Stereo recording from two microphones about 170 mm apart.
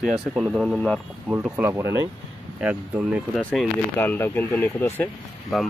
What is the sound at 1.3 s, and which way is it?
Speech, 15° right (ahead or behind).